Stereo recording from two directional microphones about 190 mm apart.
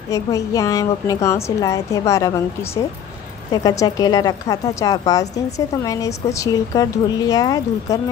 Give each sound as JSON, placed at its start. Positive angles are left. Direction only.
{"t": 0.1, "sound": "a woman's voice", "side_deg": 15}